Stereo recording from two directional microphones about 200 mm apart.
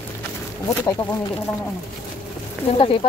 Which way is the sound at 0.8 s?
15° left (ahead or behind).